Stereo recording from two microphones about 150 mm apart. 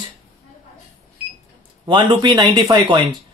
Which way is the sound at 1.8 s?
30° right (ahead or behind).